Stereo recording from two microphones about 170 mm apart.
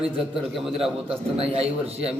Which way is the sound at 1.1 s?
35° right (ahead or behind).